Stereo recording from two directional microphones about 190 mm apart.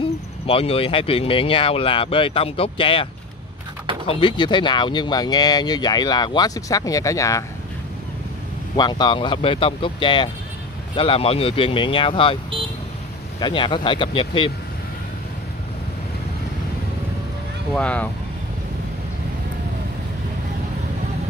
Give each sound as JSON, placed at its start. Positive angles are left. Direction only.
{"t": 0.5, "sound": "speech", "side_deg": 30}
{"t": 4.1, "sound": "speech", "side_deg": 25}
{"t": 8.7, "sound": "speech", "side_deg": 20}
{"t": 13.4, "sound": "speech", "side_deg": 25}
{"t": 17.7, "sound": "speech", "side_deg": 5}